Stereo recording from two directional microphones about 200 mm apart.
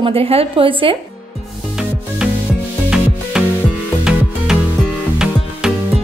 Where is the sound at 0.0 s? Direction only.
30° right (ahead or behind).